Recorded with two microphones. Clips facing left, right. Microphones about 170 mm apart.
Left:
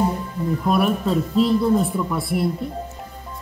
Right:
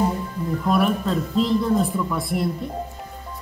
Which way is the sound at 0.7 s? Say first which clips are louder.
Left 1 dB; 5° left (ahead or behind).